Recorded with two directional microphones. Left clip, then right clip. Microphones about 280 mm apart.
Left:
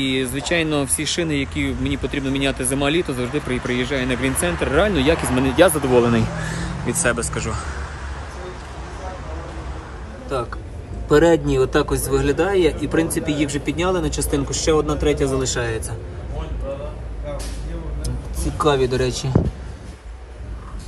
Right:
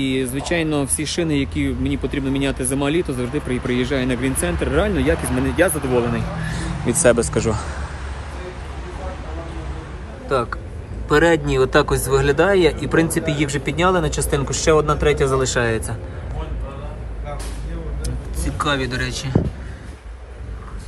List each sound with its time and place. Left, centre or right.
0.0 s speech: centre
11.1 s speech: centre
18.0 s a sound: left